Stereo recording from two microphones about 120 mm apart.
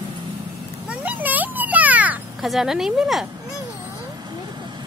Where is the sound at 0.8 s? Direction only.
15° right (ahead or behind).